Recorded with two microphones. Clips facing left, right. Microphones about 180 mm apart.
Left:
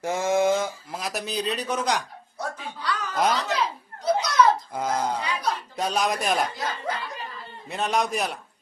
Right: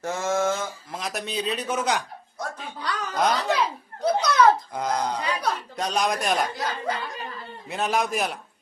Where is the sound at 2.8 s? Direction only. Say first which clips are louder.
Left 1 dB; 45° right (ahead or behind).